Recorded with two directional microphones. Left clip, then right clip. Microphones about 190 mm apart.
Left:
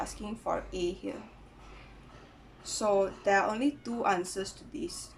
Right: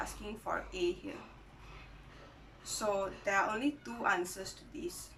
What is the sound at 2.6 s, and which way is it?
Speech, 25° left (ahead or behind).